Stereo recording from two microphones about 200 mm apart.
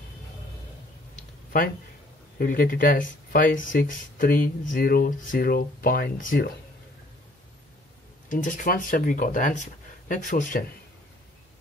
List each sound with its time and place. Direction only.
1.1 s a sound: 45° left (ahead or behind)
2.3 s speech: 45° left (ahead or behind)
8.3 s speech: 40° left (ahead or behind)